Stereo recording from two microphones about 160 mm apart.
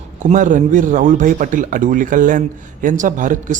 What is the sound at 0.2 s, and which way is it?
A man's voice, 50° right (ahead or behind).